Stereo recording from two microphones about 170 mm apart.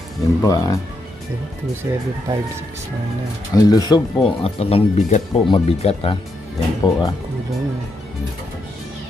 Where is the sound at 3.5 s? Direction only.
20° left (ahead or behind).